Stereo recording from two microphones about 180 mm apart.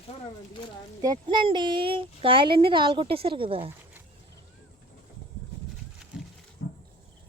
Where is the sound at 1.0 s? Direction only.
25° right (ahead or behind).